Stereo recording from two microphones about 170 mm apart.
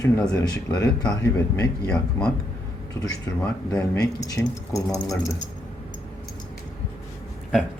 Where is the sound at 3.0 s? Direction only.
20° left (ahead or behind).